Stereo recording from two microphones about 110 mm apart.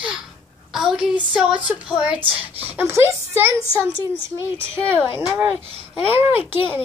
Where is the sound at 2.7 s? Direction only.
20° right (ahead or behind).